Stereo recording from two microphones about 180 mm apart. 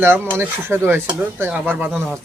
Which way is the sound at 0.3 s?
15° right (ahead or behind).